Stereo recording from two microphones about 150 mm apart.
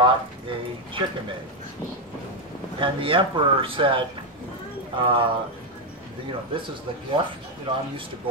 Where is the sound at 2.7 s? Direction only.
35° right (ahead or behind).